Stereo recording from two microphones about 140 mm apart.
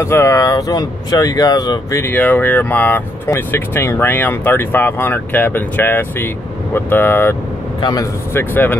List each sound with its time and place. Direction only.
0.0 s speech: 20° left (ahead or behind)
7.8 s speech: 25° left (ahead or behind)